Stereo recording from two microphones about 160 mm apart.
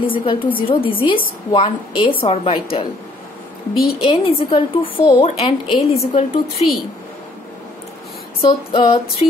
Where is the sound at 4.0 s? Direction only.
35° left (ahead or behind).